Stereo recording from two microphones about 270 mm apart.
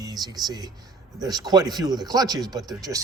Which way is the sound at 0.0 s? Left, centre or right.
Centre.